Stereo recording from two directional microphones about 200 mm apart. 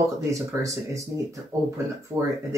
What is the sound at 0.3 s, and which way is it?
Speech, 15° right (ahead or behind).